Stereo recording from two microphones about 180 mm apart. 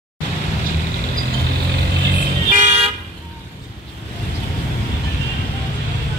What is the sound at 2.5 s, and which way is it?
Toot, 40° right (ahead or behind).